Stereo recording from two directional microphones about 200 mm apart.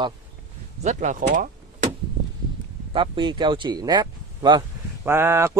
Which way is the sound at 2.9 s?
25° right (ahead or behind).